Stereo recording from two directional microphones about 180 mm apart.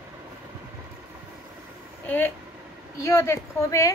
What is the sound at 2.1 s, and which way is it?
Speech, 10° left (ahead or behind).